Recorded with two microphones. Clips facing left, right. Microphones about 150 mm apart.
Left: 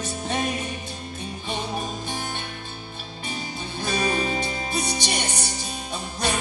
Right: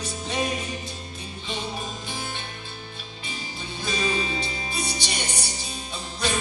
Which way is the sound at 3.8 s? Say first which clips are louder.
Left 2 dB; 50° left (ahead or behind).